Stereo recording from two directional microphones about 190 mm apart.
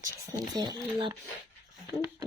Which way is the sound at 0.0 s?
20° right (ahead or behind).